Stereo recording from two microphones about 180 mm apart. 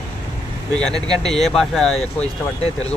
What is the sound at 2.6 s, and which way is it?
Speech, 35° left (ahead or behind).